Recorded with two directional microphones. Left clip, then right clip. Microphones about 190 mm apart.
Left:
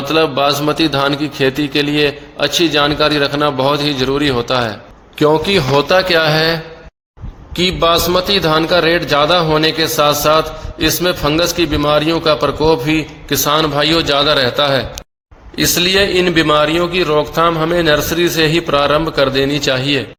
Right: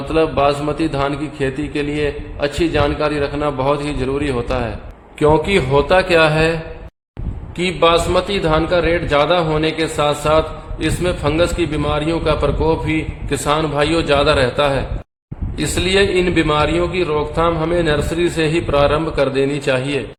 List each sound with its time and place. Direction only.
0.1 s a man's voice: 30° left (ahead or behind)
7.5 s a man's voice: 35° left (ahead or behind)